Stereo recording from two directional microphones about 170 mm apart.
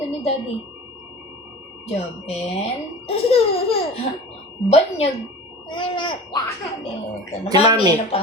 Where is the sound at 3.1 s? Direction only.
35° left (ahead or behind).